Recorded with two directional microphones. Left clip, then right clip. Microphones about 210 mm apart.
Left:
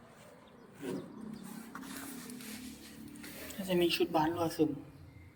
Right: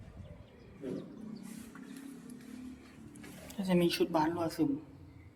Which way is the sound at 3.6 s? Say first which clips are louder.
Even; 30° right (ahead or behind).